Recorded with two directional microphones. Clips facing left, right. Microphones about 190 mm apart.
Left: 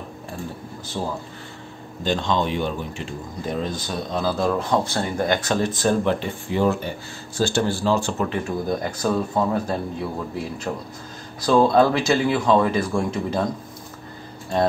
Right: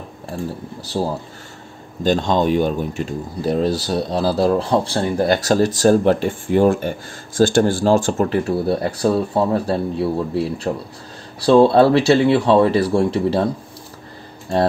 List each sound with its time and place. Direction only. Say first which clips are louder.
1.0 s speech: right 6 dB; 40° right (ahead or behind)